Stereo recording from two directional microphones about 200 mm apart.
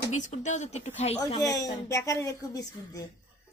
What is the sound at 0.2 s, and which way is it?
A woman's voice, 35° left (ahead or behind).